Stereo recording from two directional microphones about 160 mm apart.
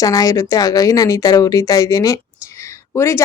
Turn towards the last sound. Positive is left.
turn(degrees=15)  # may be behind; listen again after turning